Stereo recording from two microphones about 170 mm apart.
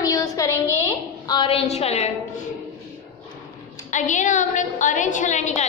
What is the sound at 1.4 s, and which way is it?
Speech, 35° left (ahead or behind).